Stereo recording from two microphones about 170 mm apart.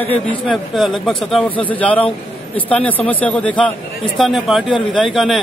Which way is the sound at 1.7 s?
10° left (ahead or behind).